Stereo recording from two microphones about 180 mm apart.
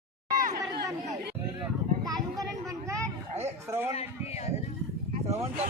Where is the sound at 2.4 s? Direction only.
15° right (ahead or behind).